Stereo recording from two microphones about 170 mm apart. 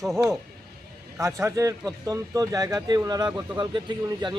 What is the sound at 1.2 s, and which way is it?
A man's voice, 15° right (ahead or behind).